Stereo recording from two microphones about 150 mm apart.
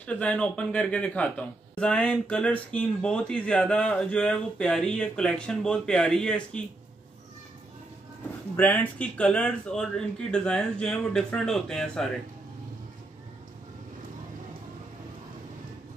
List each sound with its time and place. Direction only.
0.0 s speech: 10° left (ahead or behind)
8.5 s speech: 10° left (ahead or behind)